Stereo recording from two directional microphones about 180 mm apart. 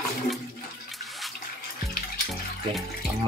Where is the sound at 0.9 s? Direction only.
Centre (ahead or behind).